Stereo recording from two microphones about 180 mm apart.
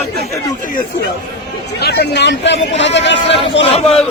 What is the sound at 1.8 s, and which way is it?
Speech, 65° left (ahead or behind).